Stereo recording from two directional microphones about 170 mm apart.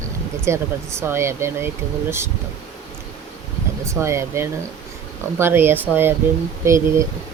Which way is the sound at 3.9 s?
15° right (ahead or behind).